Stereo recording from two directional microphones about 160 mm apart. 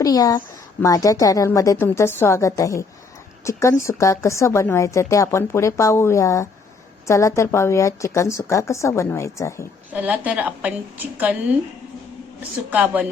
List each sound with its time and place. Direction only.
0.0 s a woman's voice: 25° left (ahead or behind)
9.9 s a woman's voice: 10° right (ahead or behind)
12.4 s a woman's voice: 10° right (ahead or behind)